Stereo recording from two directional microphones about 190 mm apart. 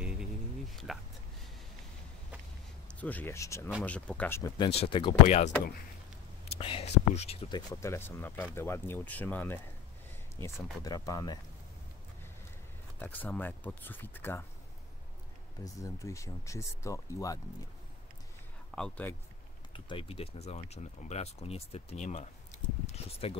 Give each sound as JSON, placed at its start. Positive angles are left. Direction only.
{"t": 0.0, "sound": "a sound", "side_deg": -5}
{"t": 2.9, "sound": "speech", "side_deg": 10}
{"t": 4.6, "sound": "speech", "side_deg": 30}
{"t": 10.8, "sound": "speech", "side_deg": 20}
{"t": 13.0, "sound": "speech", "side_deg": 10}
{"t": 15.6, "sound": "speech", "side_deg": 15}
{"t": 18.8, "sound": "speech", "side_deg": 10}
{"t": 19.7, "sound": "speech", "side_deg": 30}